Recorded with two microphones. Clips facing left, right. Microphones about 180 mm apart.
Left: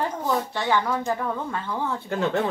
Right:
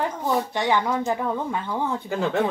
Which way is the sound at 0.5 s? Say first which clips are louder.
Right 1 dB; 15° right (ahead or behind).